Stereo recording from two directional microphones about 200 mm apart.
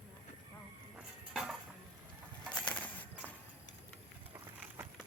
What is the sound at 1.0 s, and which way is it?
Dishes, 5° right (ahead or behind).